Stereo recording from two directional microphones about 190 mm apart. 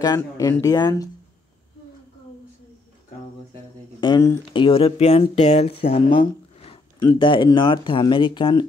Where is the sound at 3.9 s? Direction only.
20° left (ahead or behind).